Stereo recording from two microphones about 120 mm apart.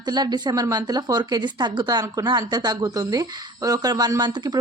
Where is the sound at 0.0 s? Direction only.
35° right (ahead or behind).